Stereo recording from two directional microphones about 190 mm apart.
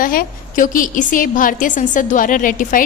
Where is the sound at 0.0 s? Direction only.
45° left (ahead or behind).